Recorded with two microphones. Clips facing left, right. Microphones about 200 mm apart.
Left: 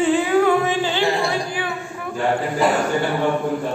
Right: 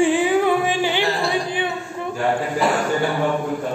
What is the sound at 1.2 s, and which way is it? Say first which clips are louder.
Speech: right 1 dB; 20° right (ahead or behind).